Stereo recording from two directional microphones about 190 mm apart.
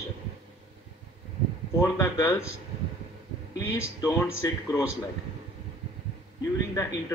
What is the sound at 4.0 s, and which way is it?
Speech, 15° left (ahead or behind).